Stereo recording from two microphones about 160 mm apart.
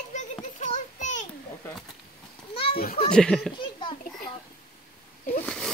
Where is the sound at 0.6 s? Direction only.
50° left (ahead or behind).